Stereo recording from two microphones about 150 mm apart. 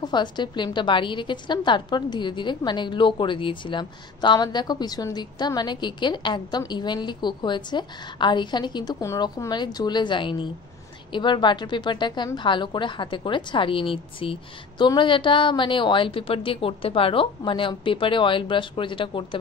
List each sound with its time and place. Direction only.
0.0 s a woman's voice: 30° left (ahead or behind)